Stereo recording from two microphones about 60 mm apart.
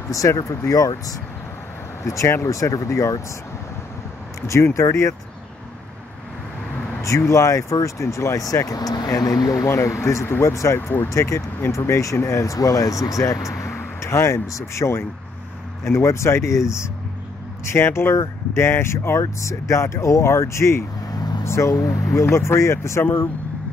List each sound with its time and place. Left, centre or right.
0.4 s speech: left
2.0 s speech: left
4.4 s speech: left
7.0 s speech: left
9.7 s speech: left
12.5 s speech: left
17.6 s speech: left
21.7 s speech: left
22.2 s speech: left